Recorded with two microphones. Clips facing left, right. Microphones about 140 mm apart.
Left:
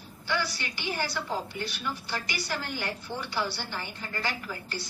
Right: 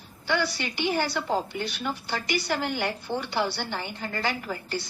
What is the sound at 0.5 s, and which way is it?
A woman's voice, 65° right (ahead or behind).